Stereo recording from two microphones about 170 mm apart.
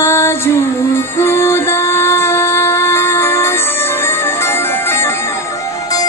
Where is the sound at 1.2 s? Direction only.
15° left (ahead or behind).